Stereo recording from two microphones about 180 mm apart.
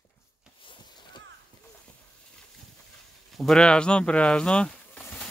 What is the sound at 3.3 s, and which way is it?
Speech, centre (ahead or behind).